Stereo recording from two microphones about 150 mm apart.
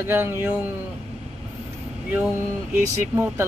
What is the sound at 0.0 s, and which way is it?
Speech, 15° right (ahead or behind).